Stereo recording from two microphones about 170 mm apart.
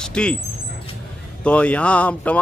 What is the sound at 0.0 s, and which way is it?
Vehicle, 5° left (ahead or behind).